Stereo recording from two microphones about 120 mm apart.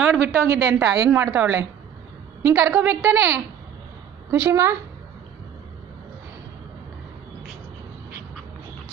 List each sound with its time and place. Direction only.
0.3 s a woman's voice: 25° right (ahead or behind)